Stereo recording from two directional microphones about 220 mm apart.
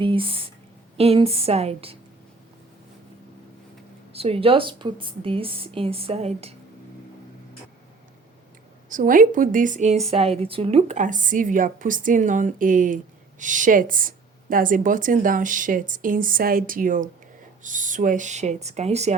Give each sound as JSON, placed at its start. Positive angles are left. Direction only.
{"t": 0.0, "sound": "a woman's voice", "side_deg": -25}
{"t": 4.1, "sound": "a woman's voice", "side_deg": -25}
{"t": 8.9, "sound": "a woman's voice", "side_deg": -35}